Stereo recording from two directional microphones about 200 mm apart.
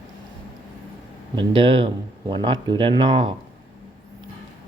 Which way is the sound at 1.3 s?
25° right (ahead or behind).